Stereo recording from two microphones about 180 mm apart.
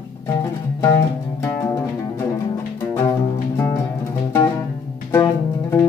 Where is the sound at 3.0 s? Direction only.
15° left (ahead or behind).